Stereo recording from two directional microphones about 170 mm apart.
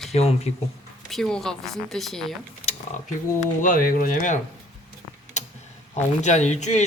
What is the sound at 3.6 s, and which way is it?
Speech, 55° left (ahead or behind).